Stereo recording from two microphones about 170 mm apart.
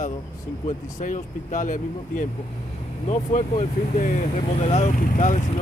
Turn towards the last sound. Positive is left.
turn(degrees=50)  # may be behind; listen again after turning